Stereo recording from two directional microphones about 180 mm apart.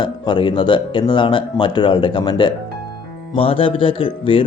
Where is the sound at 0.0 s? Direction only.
25° left (ahead or behind).